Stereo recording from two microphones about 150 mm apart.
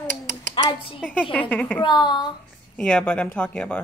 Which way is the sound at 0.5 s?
35° left (ahead or behind).